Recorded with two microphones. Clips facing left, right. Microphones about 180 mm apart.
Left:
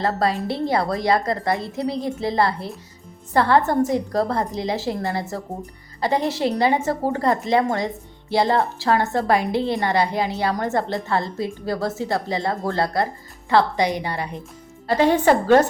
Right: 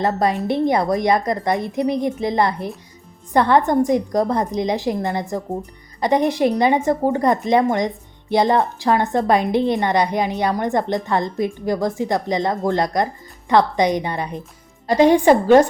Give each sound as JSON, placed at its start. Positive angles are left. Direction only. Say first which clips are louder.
{"t": 0.0, "sound": "a woman's voice", "louder": "right 2 dB", "side_deg": -20}